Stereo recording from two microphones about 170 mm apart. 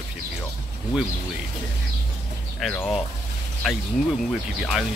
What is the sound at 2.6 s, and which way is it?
Speech, 5° left (ahead or behind).